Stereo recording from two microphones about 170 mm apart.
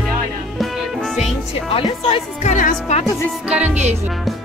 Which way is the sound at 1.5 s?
35° left (ahead or behind).